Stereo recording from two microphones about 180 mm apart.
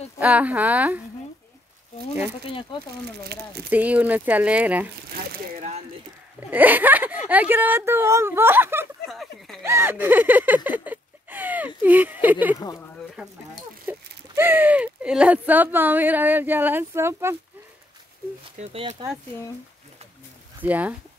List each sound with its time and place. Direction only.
0.2 s speech: 10° right (ahead or behind)
3.7 s speech: 10° right (ahead or behind)
6.5 s speech: 10° right (ahead or behind)
9.1 s a sound: centre (ahead or behind)
9.6 s speech: 15° right (ahead or behind)
18.6 s speech: 35° right (ahead or behind)
20.6 s speech: 10° right (ahead or behind)